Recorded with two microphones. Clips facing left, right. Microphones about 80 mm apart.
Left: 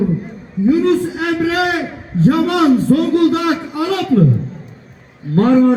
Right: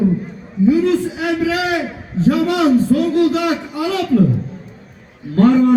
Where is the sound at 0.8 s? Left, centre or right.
Left.